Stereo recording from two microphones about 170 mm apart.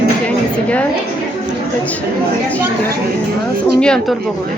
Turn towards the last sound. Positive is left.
turn(degrees=5)  # may be behind; listen again after turning